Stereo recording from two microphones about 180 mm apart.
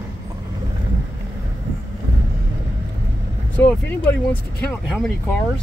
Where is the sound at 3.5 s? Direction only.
10° left (ahead or behind).